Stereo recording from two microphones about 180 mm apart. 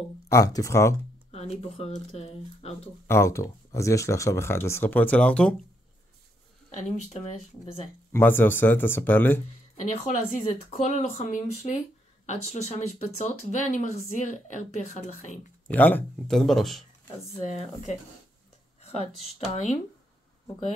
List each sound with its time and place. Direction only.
0.3 s speech: 20° left (ahead or behind)
1.3 s speech: 35° left (ahead or behind)
3.1 s speech: 15° left (ahead or behind)
7.1 s speech: 40° left (ahead or behind)
8.1 s speech: 10° left (ahead or behind)
9.8 s speech: 45° left (ahead or behind)
15.7 s speech: 10° left (ahead or behind)
18.8 s speech: 35° left (ahead or behind)